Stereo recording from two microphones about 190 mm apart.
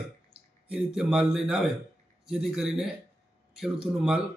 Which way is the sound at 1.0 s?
5° right (ahead or behind).